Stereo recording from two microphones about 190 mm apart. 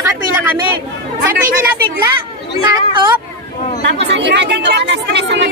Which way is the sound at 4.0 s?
65° right (ahead or behind).